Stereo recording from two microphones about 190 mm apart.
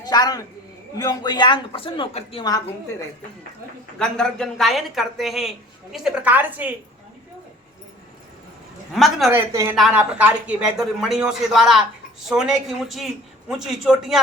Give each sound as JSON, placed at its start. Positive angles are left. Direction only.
{"t": 0.0, "sound": "a woman's voice", "side_deg": 20}
{"t": 3.9, "sound": "a woman's voice", "side_deg": 5}
{"t": 8.9, "sound": "a woman's voice", "side_deg": 0}
{"t": 9.3, "sound": "a woman's voice", "side_deg": -15}